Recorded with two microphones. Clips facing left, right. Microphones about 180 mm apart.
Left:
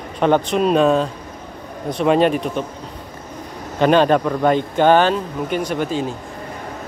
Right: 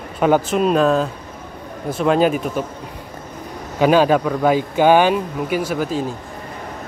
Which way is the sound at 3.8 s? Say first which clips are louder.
Even; 5° right (ahead or behind).